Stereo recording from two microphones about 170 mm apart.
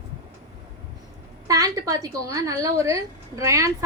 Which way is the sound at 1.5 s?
20° right (ahead or behind).